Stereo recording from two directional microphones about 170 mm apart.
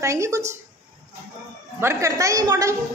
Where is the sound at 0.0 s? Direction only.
15° right (ahead or behind).